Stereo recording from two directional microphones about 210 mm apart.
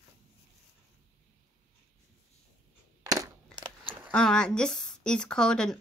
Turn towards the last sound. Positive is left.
turn(degrees=5)  # may be behind; listen again after turning